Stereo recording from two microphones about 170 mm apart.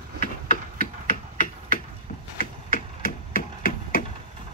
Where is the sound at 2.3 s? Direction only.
55° left (ahead or behind).